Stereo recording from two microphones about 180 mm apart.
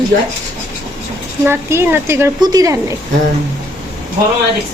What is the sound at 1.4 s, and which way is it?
Speech, 15° right (ahead or behind).